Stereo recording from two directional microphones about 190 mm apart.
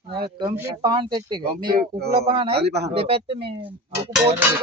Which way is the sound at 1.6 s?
50° right (ahead or behind).